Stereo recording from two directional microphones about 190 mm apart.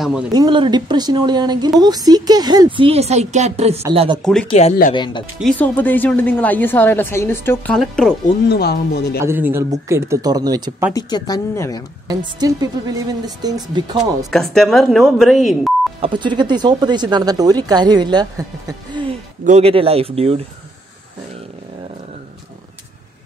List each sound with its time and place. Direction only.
0.0 s speech: 5° right (ahead or behind)
0.3 s speech: 20° right (ahead or behind)
4.2 s speech: 5° left (ahead or behind)
4.5 s speech: 35° left (ahead or behind)
5.4 s speech: 5° left (ahead or behind)
8.5 s speech: 55° left (ahead or behind)
9.2 s speech: 10° right (ahead or behind)
10.9 s speech: 20° left (ahead or behind)
12.4 s speech: 20° right (ahead or behind)
14.3 s speech: centre (ahead or behind)
16.0 s speech: 25° right (ahead or behind)
19.4 s speech: 35° right (ahead or behind)